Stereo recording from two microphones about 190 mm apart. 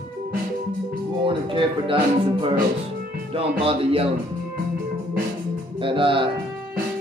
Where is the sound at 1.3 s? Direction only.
25° right (ahead or behind).